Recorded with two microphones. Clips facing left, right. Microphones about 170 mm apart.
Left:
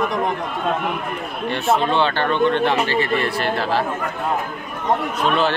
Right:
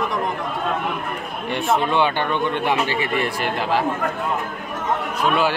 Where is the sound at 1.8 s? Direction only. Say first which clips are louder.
Left 1 dB; 15° right (ahead or behind).